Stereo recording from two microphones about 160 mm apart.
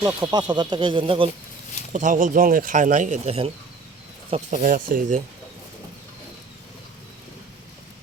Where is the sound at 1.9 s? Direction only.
50° right (ahead or behind).